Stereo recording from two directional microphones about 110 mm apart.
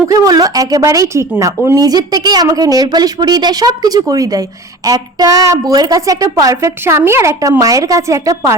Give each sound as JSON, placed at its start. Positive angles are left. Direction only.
{"t": 0.1, "sound": "a woman's voice", "side_deg": -35}